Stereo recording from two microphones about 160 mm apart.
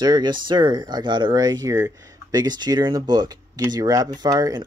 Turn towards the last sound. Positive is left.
turn(degrees=-25)  # may be behind; listen again after turning